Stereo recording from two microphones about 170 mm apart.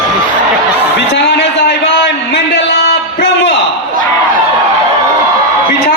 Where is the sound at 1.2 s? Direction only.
90° left.